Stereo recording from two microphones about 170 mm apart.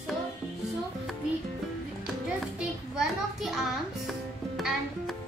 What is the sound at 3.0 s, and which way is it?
Music, centre (ahead or behind).